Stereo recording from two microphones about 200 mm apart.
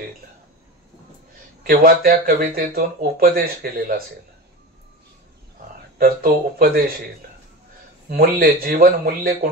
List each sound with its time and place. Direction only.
1.6 s speech: 45° right (ahead or behind)
5.9 s speech: 45° right (ahead or behind)
8.1 s speech: 45° right (ahead or behind)